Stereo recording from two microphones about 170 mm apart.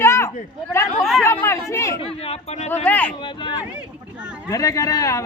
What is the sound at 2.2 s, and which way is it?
Speech, 35° left (ahead or behind).